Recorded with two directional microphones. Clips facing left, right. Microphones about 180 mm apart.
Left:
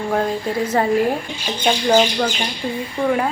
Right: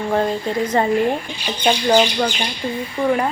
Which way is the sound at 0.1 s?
5° left (ahead or behind).